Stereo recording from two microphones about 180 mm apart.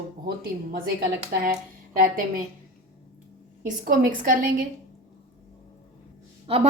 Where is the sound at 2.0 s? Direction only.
50° right (ahead or behind).